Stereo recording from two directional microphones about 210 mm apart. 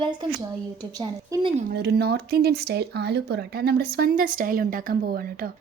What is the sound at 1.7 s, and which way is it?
Speech, 50° right (ahead or behind).